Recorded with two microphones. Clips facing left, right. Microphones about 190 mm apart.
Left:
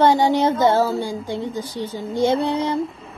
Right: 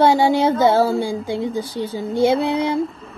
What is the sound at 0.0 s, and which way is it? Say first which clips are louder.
A woman's voice: right 1 dB; 10° right (ahead or behind).